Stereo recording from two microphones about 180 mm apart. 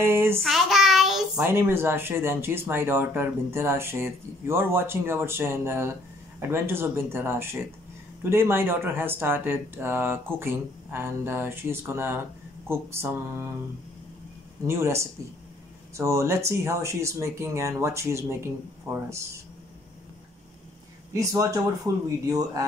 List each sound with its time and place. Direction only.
0.0 s speech: 15° right (ahead or behind)
0.4 s child singing: centre (ahead or behind)
1.4 s speech: 15° right (ahead or behind)
14.7 s speech: 15° right (ahead or behind)
21.1 s speech: 15° right (ahead or behind)